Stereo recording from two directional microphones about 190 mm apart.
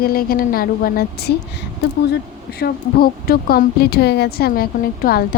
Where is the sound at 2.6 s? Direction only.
55° left (ahead or behind).